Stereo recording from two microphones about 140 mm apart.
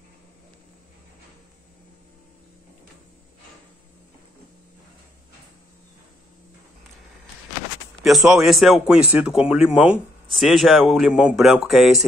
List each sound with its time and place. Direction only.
8.0 s a man's voice: 5° right (ahead or behind)